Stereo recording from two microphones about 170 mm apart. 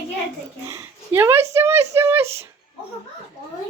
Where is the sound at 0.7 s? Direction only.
15° right (ahead or behind).